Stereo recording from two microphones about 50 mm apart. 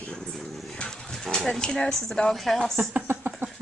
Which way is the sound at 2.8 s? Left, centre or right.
Right.